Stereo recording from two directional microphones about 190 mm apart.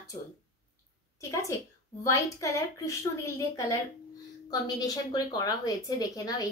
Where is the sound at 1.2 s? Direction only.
15° left (ahead or behind).